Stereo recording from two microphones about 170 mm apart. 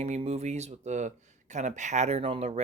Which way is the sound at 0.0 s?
40° right (ahead or behind).